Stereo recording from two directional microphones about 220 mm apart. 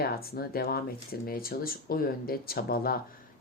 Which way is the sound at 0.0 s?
45° left (ahead or behind).